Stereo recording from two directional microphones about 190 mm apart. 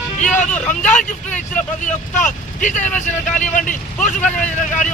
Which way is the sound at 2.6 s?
40° left (ahead or behind).